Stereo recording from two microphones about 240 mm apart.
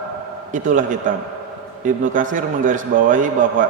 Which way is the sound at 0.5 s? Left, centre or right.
Right.